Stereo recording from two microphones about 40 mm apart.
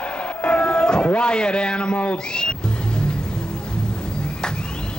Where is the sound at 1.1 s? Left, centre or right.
Left.